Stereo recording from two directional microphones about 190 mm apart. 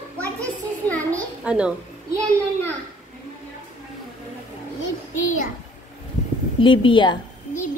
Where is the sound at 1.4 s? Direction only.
5° right (ahead or behind).